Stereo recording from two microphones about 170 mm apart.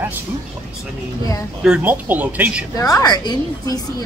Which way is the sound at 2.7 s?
20° left (ahead or behind).